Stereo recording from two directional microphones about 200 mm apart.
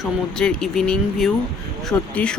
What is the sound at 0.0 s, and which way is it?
Speech, 5° left (ahead or behind).